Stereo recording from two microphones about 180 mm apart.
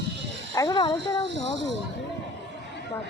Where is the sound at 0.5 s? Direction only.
25° left (ahead or behind).